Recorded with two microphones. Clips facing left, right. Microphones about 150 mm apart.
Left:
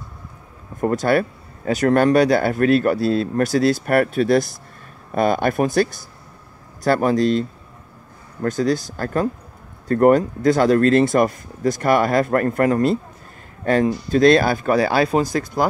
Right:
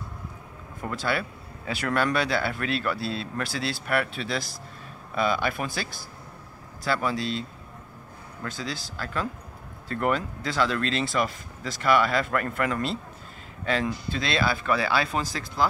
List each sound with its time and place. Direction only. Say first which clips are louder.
0.7 s speech: left 11 dB; 45° left (ahead or behind)
6.8 s speech: left 10 dB; 50° left (ahead or behind)